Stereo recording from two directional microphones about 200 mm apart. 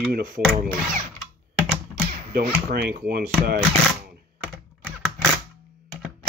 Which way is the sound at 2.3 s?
50° right (ahead or behind).